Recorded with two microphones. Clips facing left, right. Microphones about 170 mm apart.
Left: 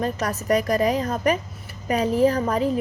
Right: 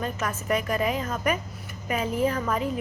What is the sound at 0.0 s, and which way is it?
A woman's voice, 40° left (ahead or behind).